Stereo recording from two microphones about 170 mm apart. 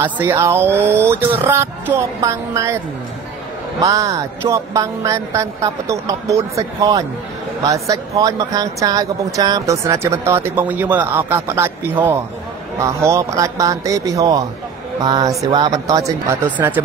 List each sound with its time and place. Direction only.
0.0 s speech: 15° right (ahead or behind)
3.8 s speech: 20° right (ahead or behind)